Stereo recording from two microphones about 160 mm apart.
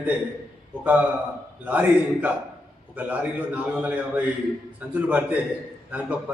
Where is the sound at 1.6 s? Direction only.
10° right (ahead or behind).